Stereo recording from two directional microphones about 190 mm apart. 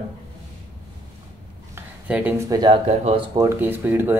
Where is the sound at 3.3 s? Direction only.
15° right (ahead or behind).